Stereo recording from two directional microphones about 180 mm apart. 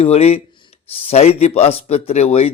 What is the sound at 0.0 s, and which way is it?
A man's voice, 35° left (ahead or behind).